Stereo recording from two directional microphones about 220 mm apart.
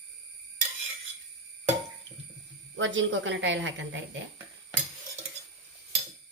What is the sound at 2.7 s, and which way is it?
A woman's voice, 60° right (ahead or behind).